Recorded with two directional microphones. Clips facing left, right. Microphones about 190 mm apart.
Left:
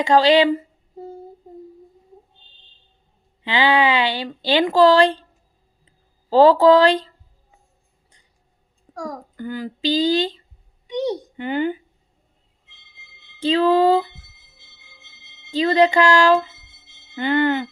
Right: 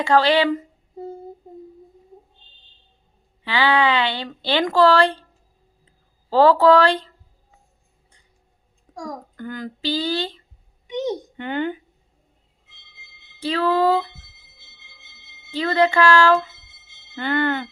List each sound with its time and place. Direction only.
0.1 s speech: 15° left (ahead or behind)
3.4 s speech: 15° left (ahead or behind)
6.3 s speech: 15° left (ahead or behind)
9.0 s speech: 10° left (ahead or behind)
13.4 s speech: 20° left (ahead or behind)
15.5 s speech: 15° left (ahead or behind)